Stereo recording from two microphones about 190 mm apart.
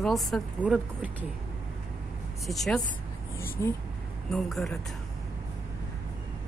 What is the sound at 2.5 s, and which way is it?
Speech, centre (ahead or behind).